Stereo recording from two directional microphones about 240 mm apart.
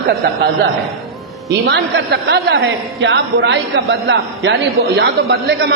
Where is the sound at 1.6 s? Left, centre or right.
Right.